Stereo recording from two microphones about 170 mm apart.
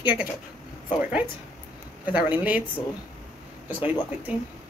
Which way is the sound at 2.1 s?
10° right (ahead or behind).